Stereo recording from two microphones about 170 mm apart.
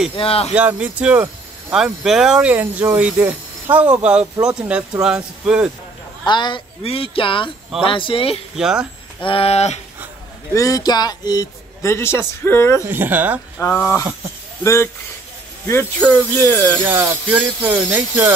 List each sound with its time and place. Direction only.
0.1 s speech: 35° left (ahead or behind)
0.6 s speech: 5° right (ahead or behind)
6.2 s speech: 25° left (ahead or behind)
8.5 s speech: 5° right (ahead or behind)
9.2 s speech: 35° left (ahead or behind)
10.5 s a man's voice: 20° left (ahead or behind)
12.8 s speech: 10° right (ahead or behind)
13.6 s a man's voice: 10° left (ahead or behind)
16.8 s speech: 10° right (ahead or behind)